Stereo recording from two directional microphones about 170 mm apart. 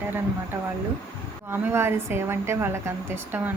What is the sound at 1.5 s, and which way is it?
A woman's voice, 15° right (ahead or behind).